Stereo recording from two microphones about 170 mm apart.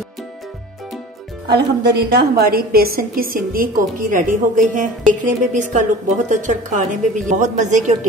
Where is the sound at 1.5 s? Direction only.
75° right (ahead or behind); by 5.9 s 45° right (ahead or behind).